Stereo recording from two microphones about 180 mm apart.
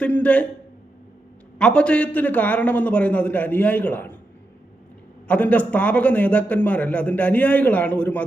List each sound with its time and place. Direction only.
0.0 s a man's voice: 5° left (ahead or behind)
1.5 s a man's voice: 5° left (ahead or behind)
5.3 s a man's voice: 10° left (ahead or behind)